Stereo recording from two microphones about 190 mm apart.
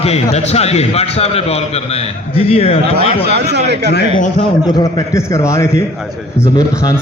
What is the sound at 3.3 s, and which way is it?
Speech, 60° right (ahead or behind).